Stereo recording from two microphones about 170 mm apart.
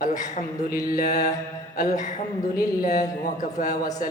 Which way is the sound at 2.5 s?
55° left (ahead or behind).